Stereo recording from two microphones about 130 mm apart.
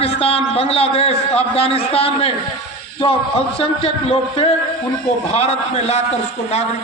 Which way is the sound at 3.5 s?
50° left (ahead or behind).